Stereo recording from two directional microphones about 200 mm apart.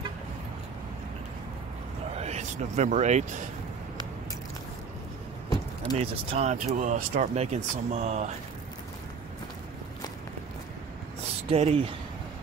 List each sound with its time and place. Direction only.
2.1 s speech: 35° right (ahead or behind)
5.9 s speech: 35° right (ahead or behind)
11.4 s speech: 30° right (ahead or behind)